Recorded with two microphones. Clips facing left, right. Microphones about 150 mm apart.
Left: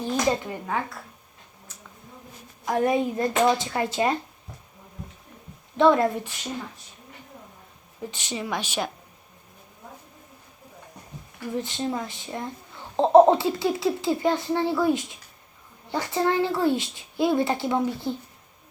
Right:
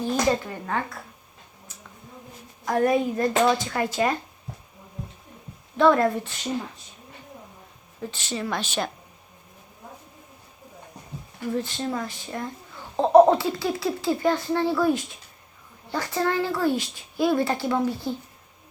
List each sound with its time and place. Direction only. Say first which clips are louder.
0.3 s speech: right 1 dB; 15° left (ahead or behind)
2.6 s speech: right 1 dB; 20° left (ahead or behind)
5.7 s speech: even; 20° left (ahead or behind)
8.1 s speech: right 1 dB; 15° left (ahead or behind)
11.5 s speech: even; 20° left (ahead or behind)